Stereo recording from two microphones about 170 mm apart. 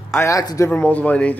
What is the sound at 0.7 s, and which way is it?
Speech, 10° left (ahead or behind).